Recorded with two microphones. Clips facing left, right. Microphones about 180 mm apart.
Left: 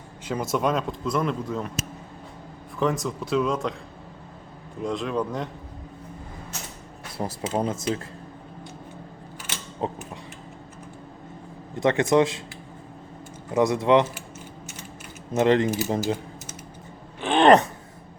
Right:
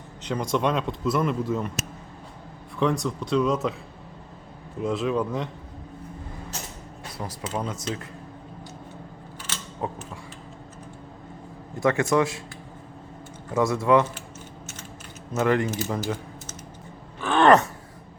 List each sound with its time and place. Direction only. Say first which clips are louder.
0.3 s a man's voice: even; 5° left (ahead or behind)
2.7 s a man's voice: right 1 dB; centre (ahead or behind)
4.8 s a man's voice: right 2 dB; 5° right (ahead or behind)
7.2 s speech: left 4 dB; 30° left (ahead or behind)
9.8 s speech: left 2 dB; 25° left (ahead or behind)
11.8 s speech: left 2 dB; 20° left (ahead or behind)
13.5 s speech: left 1 dB; 15° left (ahead or behind)
15.3 s speech: left 3 dB; 20° left (ahead or behind)
15.8 s speech: left 3 dB; 40° left (ahead or behind)
17.2 s a sound: left 1 dB; 20° left (ahead or behind)